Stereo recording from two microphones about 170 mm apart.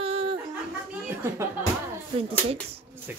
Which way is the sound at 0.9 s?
15° right (ahead or behind).